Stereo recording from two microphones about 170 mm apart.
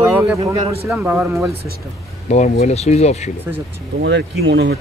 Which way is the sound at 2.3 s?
40° left (ahead or behind).